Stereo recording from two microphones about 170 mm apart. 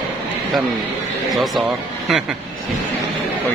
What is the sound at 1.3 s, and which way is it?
Speech, centre (ahead or behind).